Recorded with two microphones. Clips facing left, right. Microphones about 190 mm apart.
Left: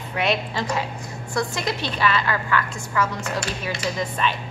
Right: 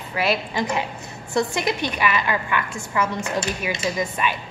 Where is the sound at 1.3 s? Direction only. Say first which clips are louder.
Right 3 dB; 20° right (ahead or behind).